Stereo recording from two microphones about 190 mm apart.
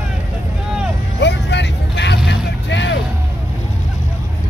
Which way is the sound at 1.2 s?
65° left (ahead or behind).